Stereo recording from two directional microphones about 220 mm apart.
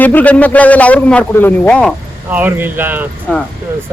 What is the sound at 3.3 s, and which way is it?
Speech, 5° left (ahead or behind).